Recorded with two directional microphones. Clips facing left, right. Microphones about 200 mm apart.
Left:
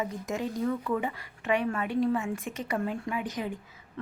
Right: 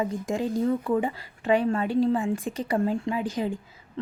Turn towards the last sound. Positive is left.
turn(degrees=-30)  # may be behind; listen again after turning